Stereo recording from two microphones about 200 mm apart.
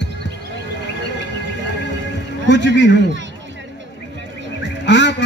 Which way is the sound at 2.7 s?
60° left (ahead or behind).